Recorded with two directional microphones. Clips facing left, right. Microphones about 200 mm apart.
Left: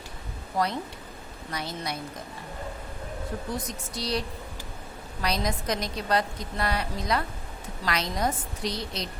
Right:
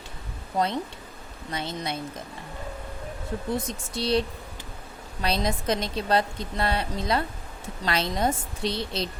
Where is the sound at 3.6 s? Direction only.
25° right (ahead or behind).